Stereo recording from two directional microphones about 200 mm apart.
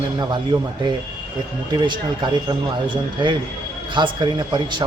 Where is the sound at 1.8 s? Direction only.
20° right (ahead or behind).